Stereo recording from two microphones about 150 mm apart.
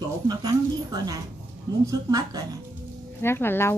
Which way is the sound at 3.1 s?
15° left (ahead or behind).